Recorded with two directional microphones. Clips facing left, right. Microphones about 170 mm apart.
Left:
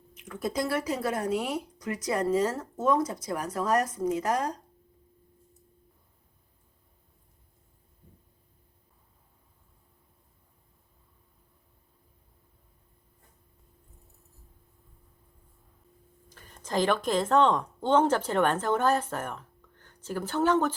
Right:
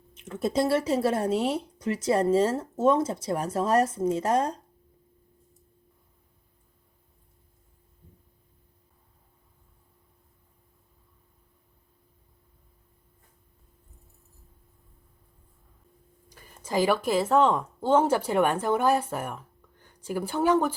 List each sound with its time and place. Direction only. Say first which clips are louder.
0.1 s speech: right 4 dB; 25° right (ahead or behind)
16.3 s a woman's voice: right 2 dB; 10° right (ahead or behind)